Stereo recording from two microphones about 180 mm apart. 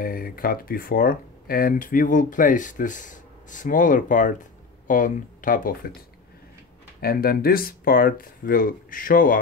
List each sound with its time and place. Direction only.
0.0 s speech: 55° left (ahead or behind)
7.0 s speech: 55° left (ahead or behind)